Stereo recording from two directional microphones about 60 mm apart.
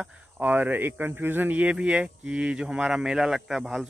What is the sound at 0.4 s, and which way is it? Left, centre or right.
Speech, right.